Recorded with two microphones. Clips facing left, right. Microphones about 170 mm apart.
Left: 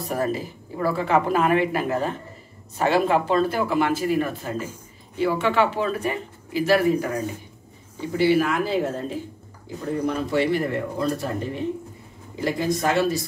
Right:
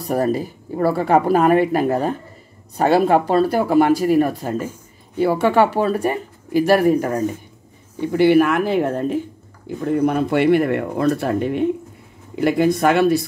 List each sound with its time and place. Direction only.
0.0 s speech: 40° right (ahead or behind); by 13.2 s 60° right (ahead or behind)